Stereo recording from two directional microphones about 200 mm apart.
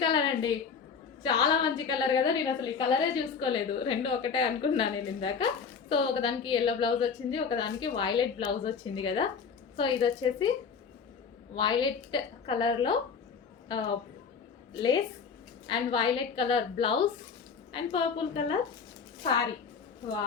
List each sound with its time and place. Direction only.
0.0 s a sound: 20° left (ahead or behind)
1.2 s a woman's voice: 20° left (ahead or behind)
11.5 s a woman's voice: 25° left (ahead or behind)